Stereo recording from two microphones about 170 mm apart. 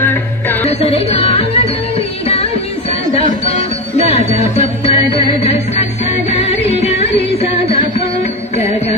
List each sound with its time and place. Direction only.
0.0 s music: 10° left (ahead or behind)
0.6 s music: 35° left (ahead or behind)